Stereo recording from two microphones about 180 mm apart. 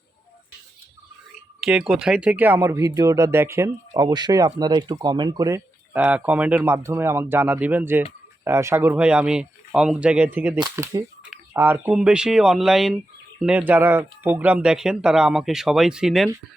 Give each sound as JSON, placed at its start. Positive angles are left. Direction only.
{"t": 1.6, "sound": "speech", "side_deg": -5}